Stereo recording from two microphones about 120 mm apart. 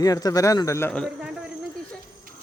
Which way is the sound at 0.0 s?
30° left (ahead or behind).